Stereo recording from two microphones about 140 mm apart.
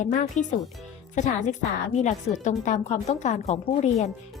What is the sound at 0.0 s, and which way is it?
A woman's voice, 65° left (ahead or behind).